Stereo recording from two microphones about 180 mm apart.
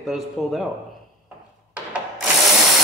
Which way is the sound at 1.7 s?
5° right (ahead or behind).